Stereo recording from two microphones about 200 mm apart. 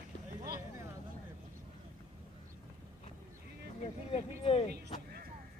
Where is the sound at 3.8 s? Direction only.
30° left (ahead or behind).